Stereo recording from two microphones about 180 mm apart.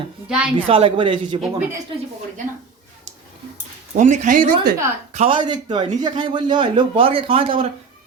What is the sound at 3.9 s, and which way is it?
Speech, 45° right (ahead or behind).